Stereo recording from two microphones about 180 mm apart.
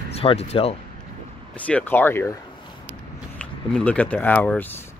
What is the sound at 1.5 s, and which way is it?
Speech, 5° left (ahead or behind).